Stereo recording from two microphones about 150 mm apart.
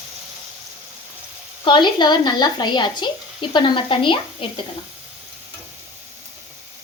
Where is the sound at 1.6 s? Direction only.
30° left (ahead or behind).